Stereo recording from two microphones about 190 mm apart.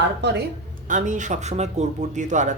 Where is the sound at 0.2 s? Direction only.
65° right (ahead or behind).